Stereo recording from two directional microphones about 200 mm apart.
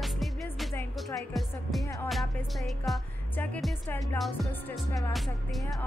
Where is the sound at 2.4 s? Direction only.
Centre (ahead or behind).